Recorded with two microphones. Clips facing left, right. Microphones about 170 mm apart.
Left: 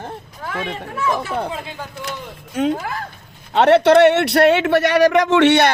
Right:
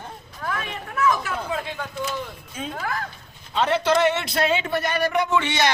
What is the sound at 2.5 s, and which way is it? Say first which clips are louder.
A man's voice: left 11 dB; 70° left (ahead or behind).